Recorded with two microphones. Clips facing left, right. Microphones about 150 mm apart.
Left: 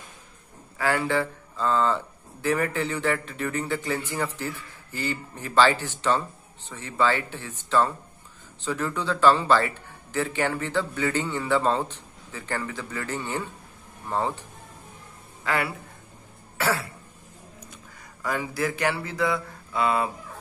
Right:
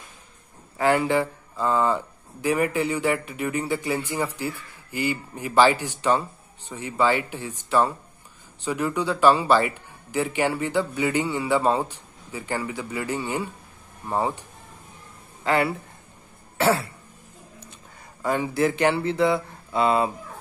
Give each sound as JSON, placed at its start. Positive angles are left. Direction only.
{"t": 0.7, "sound": "speech", "side_deg": -20}
{"t": 15.4, "sound": "a man's voice", "side_deg": -25}
{"t": 16.5, "sound": "throat clearing", "side_deg": -25}
{"t": 18.2, "sound": "speech", "side_deg": -25}